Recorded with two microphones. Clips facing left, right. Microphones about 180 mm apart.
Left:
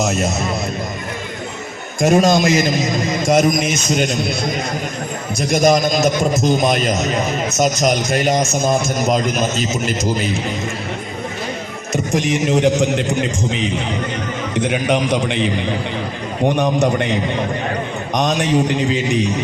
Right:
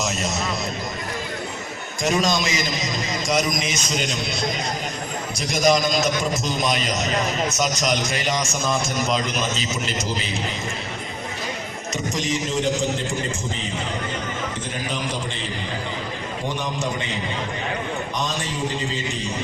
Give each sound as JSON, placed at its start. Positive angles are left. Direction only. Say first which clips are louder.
{"t": 0.0, "sound": "a man's voice", "louder": "left 7 dB", "side_deg": 50}
{"t": 2.0, "sound": "a man's voice", "louder": "left 8 dB", "side_deg": 50}
{"t": 12.1, "sound": "a man's voice", "louder": "left 9 dB", "side_deg": 60}